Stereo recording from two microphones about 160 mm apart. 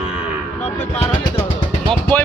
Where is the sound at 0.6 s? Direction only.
40° left (ahead or behind).